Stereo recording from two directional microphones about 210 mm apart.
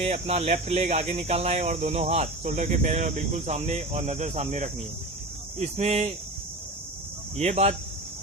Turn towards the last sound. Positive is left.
turn(degrees=-30)  # may be behind; listen again after turning